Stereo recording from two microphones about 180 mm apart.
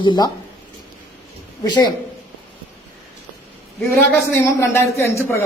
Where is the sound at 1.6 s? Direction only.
20° left (ahead or behind).